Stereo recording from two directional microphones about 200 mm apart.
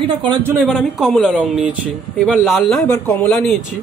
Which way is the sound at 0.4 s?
10° right (ahead or behind).